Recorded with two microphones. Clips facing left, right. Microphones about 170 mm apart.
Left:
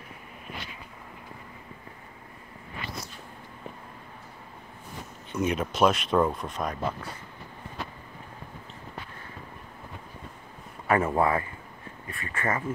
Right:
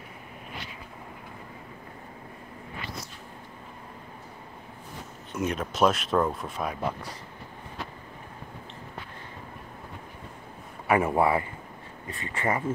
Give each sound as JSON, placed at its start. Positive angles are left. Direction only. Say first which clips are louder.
{"t": 5.3, "sound": "speech", "louder": "left 2 dB", "side_deg": 0}
{"t": 10.9, "sound": "speech", "louder": "right 1 dB", "side_deg": -10}